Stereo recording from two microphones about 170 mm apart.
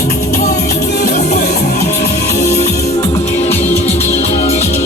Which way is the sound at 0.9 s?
75° left (ahead or behind).